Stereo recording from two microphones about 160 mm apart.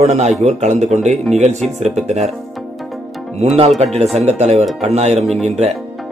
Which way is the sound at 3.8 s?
40° right (ahead or behind).